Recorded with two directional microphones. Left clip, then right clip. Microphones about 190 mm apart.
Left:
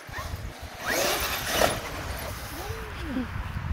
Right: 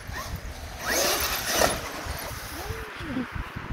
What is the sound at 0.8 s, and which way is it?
Vehicle, centre (ahead or behind).